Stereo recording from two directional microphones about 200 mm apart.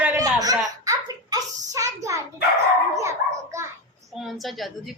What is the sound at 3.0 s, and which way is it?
Dog, 15° right (ahead or behind).